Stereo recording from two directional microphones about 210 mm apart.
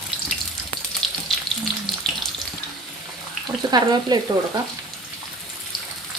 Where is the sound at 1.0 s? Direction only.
Centre (ahead or behind).